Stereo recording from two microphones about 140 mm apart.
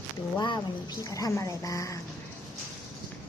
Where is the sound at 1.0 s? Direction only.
25° left (ahead or behind).